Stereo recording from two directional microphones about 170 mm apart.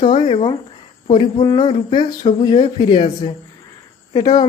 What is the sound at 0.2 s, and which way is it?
Speech, 30° left (ahead or behind).